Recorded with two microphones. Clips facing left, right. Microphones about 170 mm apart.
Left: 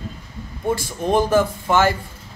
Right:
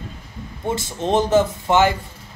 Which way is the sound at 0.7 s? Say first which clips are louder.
Left 1 dB; 25° right (ahead or behind).